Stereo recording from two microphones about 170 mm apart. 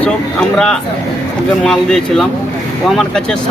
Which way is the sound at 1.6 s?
5° left (ahead or behind).